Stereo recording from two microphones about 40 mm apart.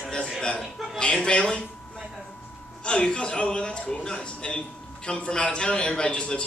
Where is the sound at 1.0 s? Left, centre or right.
Left.